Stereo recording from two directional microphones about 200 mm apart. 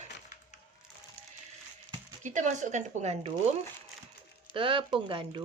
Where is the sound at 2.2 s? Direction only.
35° right (ahead or behind).